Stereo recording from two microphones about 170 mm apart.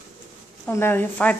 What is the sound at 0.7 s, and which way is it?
Speech, 15° left (ahead or behind).